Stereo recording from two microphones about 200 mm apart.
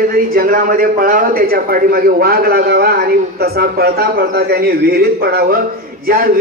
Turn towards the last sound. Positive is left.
turn(degrees=-45)  # may be behind; listen again after turning